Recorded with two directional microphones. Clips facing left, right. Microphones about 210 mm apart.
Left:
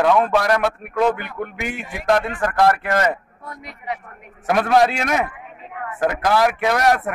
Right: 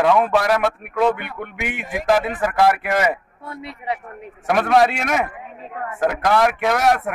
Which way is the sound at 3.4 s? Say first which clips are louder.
Right 3 dB; 30° right (ahead or behind).